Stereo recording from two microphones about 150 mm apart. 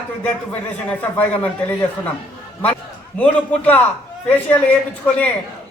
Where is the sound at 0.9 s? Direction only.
10° left (ahead or behind).